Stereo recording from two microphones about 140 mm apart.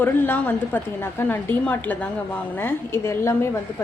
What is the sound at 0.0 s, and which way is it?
A woman's voice, 15° left (ahead or behind).